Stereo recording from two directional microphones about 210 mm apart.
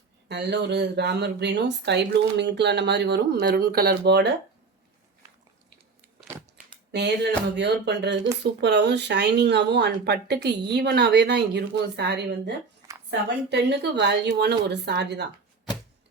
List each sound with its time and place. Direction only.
0.3 s speech: 55° right (ahead or behind)
6.9 s speech: 55° right (ahead or behind)